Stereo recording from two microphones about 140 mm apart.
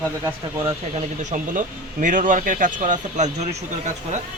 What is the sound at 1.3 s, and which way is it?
Speech, 65° right (ahead or behind).